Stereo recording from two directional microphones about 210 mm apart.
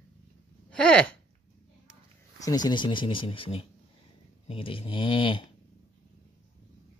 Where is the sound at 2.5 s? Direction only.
20° left (ahead or behind).